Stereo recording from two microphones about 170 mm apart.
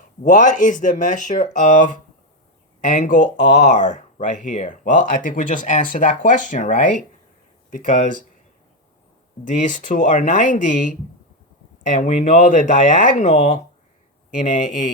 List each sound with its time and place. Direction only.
0.2 s speech: 50° left (ahead or behind)
9.4 s speech: 45° left (ahead or behind)